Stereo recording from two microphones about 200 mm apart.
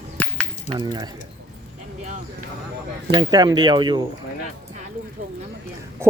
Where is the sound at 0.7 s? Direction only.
20° right (ahead or behind).